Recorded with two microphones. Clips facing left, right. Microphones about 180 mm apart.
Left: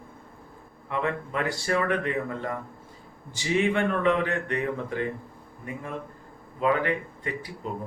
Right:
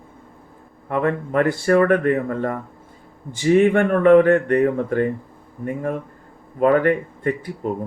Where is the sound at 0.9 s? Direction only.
50° right (ahead or behind).